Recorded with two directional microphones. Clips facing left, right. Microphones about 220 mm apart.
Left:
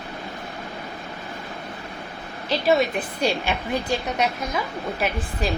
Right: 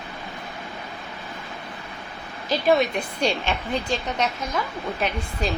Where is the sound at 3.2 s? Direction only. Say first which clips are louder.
Left 1 dB; 10° left (ahead or behind).